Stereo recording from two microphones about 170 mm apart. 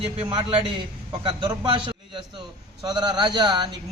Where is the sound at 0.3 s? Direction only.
30° right (ahead or behind).